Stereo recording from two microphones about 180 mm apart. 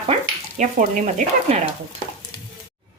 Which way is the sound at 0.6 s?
40° right (ahead or behind).